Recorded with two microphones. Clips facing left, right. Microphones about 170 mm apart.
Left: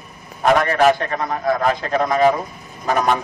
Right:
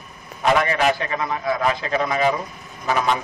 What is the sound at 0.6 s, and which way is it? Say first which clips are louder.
A man's voice: left 5 dB; 45° left (ahead or behind).